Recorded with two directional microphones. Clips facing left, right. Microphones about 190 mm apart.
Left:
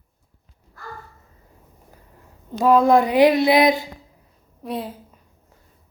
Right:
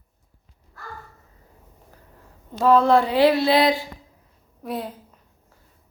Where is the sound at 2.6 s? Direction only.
15° left (ahead or behind).